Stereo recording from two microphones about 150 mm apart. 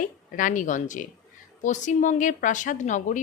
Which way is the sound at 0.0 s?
60° left (ahead or behind).